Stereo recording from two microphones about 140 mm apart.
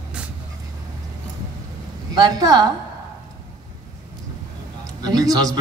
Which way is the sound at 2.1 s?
25° right (ahead or behind).